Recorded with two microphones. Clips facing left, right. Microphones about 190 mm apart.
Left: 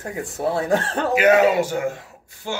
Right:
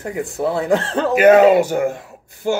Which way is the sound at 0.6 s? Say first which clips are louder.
Right 3 dB; 25° right (ahead or behind).